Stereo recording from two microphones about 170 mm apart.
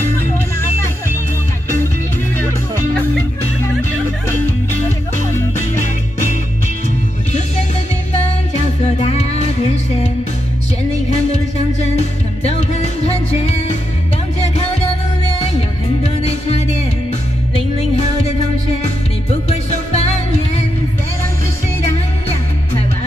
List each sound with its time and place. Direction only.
9.0 s music: 40° left (ahead or behind)
12.0 s music: 40° left (ahead or behind)
16.2 s music: 40° left (ahead or behind)
19.5 s music: 40° left (ahead or behind)